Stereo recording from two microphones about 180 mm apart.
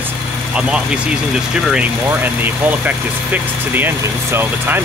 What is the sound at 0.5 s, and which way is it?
Speech, 5° right (ahead or behind).